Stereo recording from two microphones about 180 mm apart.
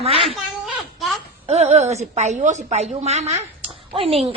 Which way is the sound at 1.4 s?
35° right (ahead or behind).